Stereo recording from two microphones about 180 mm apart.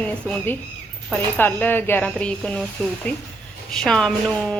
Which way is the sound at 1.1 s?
10° left (ahead or behind).